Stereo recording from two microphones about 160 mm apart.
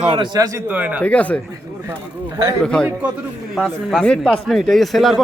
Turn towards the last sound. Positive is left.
turn(degrees=0)  # may be behind; listen again after turning